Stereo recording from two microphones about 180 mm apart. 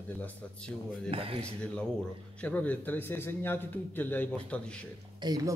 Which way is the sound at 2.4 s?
10° left (ahead or behind).